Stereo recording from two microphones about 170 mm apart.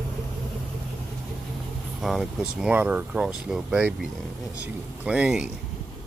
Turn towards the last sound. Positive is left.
turn(degrees=-5)  # may be behind; listen again after turning